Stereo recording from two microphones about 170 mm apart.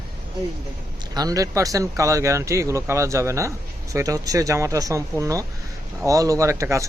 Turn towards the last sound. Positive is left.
turn(degrees=-15)  # may be behind; listen again after turning